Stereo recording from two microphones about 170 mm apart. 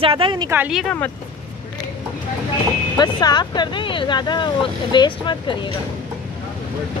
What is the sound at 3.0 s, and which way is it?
Speech, 25° left (ahead or behind).